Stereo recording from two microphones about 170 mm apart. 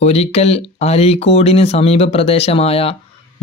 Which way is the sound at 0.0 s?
40° left (ahead or behind).